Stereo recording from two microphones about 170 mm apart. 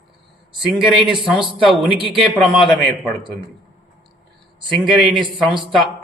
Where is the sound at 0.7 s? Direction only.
Centre (ahead or behind).